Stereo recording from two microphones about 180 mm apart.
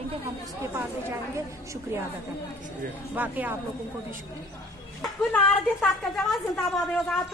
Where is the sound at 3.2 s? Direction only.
10° right (ahead or behind).